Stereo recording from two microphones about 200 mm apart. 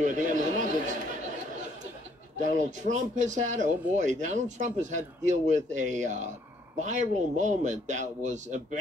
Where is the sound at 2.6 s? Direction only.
35° right (ahead or behind).